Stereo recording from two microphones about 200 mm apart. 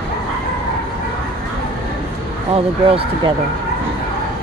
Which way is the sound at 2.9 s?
30° right (ahead or behind).